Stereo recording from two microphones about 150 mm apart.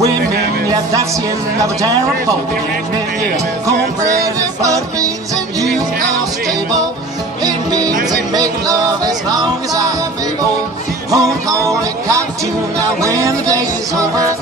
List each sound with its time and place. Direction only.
1.6 s speech: 25° right (ahead or behind)
4.6 s speech: 20° right (ahead or behind)
7.4 s music: 25° right (ahead or behind)
11.1 s music: 20° right (ahead or behind)